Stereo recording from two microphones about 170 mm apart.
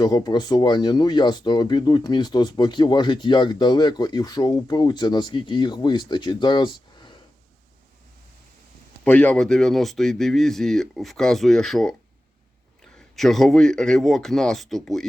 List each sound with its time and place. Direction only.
0.0 s speech: 25° left (ahead or behind)
9.0 s speech: 10° left (ahead or behind)